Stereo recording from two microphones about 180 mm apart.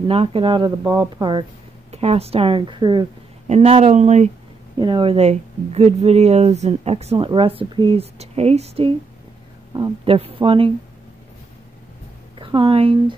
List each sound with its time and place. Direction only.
0.1 s speech: 30° right (ahead or behind)
4.7 s speech: 25° right (ahead or behind)
12.4 s a woman's voice: 30° right (ahead or behind)